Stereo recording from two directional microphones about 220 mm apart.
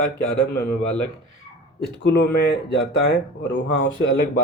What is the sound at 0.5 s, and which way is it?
Speech, 45° left (ahead or behind).